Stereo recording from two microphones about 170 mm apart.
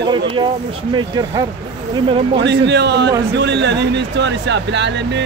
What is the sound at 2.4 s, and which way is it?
Speech, 90° right.